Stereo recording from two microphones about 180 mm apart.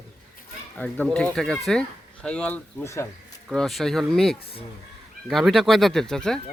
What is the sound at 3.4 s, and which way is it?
Speech, centre (ahead or behind).